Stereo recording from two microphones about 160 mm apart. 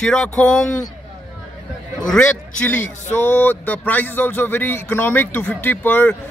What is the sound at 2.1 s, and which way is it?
A man's voice, 10° left (ahead or behind).